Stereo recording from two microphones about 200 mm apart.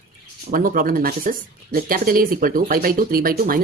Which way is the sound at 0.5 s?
45° right (ahead or behind).